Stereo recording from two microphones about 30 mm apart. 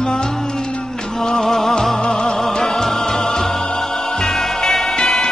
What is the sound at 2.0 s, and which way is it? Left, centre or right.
Music, left.